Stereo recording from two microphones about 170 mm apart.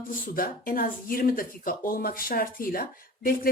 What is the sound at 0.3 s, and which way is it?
A woman's voice, 55° left (ahead or behind).